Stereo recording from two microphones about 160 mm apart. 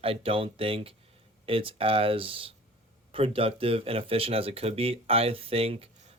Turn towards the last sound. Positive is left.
turn(degrees=-35)  # may be behind; listen again after turning